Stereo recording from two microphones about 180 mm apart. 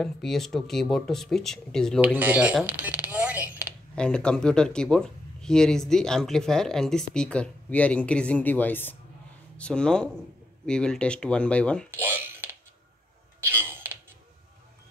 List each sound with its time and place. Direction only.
0.0 s speech: centre (ahead or behind)
2.1 s speech: 10° right (ahead or behind)
3.9 s speech: 5° left (ahead or behind)
11.9 s mechanisms: 15° right (ahead or behind)
13.4 s a sound: 10° right (ahead or behind)